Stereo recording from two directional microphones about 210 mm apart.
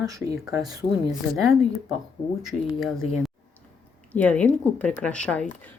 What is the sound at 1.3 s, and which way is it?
A woman's voice, centre (ahead or behind).